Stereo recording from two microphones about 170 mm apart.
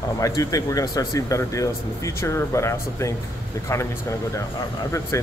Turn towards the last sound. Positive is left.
turn(degrees=20)  # may be behind; listen again after turning